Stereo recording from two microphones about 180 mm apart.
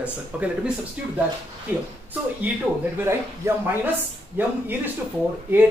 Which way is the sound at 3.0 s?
15° right (ahead or behind).